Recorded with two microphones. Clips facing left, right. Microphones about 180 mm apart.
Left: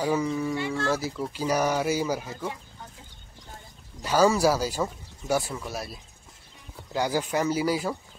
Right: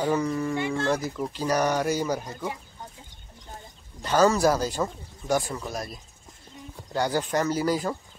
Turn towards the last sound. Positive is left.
turn(degrees=10)  # may be behind; listen again after turning